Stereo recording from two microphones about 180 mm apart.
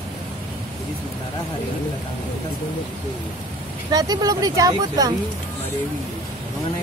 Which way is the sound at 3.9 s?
20° right (ahead or behind).